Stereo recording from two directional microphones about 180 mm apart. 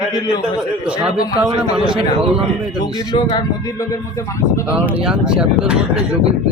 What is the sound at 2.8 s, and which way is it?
Speech, 25° left (ahead or behind).